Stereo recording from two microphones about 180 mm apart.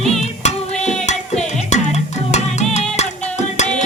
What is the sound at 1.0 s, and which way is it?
Music, 40° left (ahead or behind).